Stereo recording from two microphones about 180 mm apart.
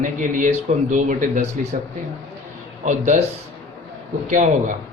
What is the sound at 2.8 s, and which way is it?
Speech, 45° right (ahead or behind).